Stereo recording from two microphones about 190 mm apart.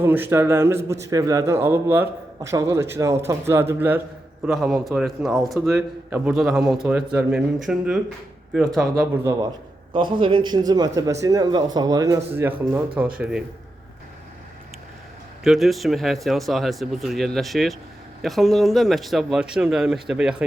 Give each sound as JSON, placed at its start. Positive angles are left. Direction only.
{"t": 0.0, "sound": "a man's voice", "side_deg": -10}
{"t": 9.9, "sound": "a man's voice", "side_deg": -25}
{"t": 15.4, "sound": "a man's voice", "side_deg": 0}